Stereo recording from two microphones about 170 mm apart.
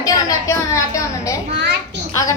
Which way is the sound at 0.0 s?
20° left (ahead or behind).